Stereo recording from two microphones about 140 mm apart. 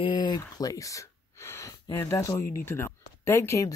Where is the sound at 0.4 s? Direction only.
25° left (ahead or behind).